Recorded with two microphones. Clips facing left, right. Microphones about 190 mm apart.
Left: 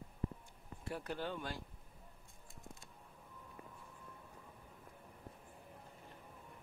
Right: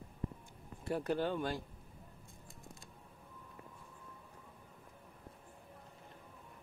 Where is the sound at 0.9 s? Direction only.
40° right (ahead or behind).